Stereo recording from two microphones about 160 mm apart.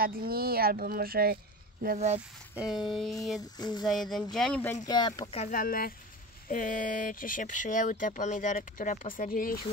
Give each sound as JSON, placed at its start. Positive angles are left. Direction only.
{"t": 0.0, "sound": "speech", "side_deg": -70}
{"t": 2.0, "sound": "speech", "side_deg": -40}
{"t": 2.5, "sound": "speech", "side_deg": -5}
{"t": 3.3, "sound": "speech", "side_deg": 25}
{"t": 3.8, "sound": "speech", "side_deg": 0}
{"t": 4.8, "sound": "speech", "side_deg": 25}
{"t": 5.3, "sound": "speech", "side_deg": 50}